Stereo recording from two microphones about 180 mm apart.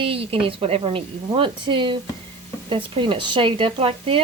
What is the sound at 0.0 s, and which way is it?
Speech, 30° right (ahead or behind).